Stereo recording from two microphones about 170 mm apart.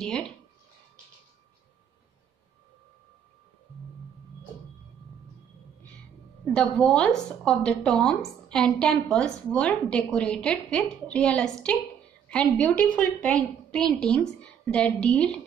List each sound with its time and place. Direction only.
0.0 s a woman's voice: 5° left (ahead or behind)
6.5 s a woman's voice: 5° left (ahead or behind)